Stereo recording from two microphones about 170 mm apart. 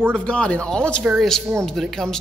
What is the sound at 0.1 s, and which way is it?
A man's voice, 5° left (ahead or behind).